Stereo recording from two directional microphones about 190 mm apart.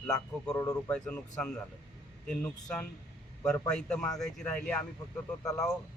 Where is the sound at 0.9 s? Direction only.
5° left (ahead or behind).